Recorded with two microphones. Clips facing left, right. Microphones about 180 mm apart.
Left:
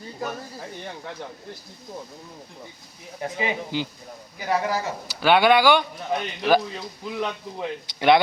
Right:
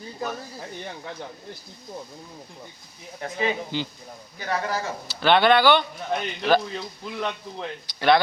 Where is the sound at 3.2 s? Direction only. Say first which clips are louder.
Right 1 dB; 10° left (ahead or behind).